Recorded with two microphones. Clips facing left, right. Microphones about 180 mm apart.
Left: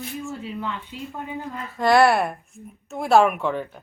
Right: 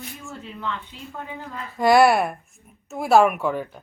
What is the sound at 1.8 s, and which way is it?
Speech, 5° right (ahead or behind).